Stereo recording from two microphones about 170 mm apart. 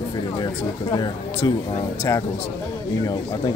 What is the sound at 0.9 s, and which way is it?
Speech, 25° left (ahead or behind).